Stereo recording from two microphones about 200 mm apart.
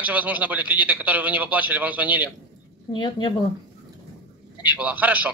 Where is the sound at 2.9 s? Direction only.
25° left (ahead or behind).